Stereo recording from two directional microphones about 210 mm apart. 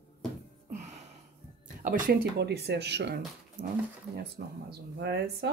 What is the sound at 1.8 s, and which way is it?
Speech, 40° right (ahead or behind).